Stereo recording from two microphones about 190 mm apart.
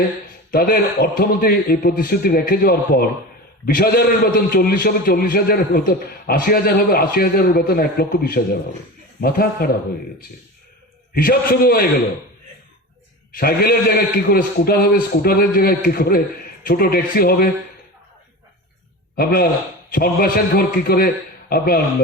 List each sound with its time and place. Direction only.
0.5 s a man's voice: 50° left (ahead or behind)
11.1 s a man's voice: 50° left (ahead or behind)
13.3 s a man's voice: 50° left (ahead or behind)
19.1 s a man's voice: 50° left (ahead or behind)